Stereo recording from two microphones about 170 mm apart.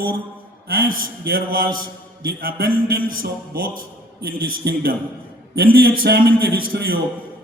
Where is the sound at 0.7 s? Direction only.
60° right (ahead or behind).